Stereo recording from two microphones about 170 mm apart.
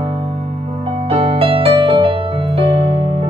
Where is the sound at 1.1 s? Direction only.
30° right (ahead or behind).